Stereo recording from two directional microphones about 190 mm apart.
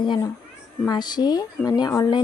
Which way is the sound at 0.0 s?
25° left (ahead or behind).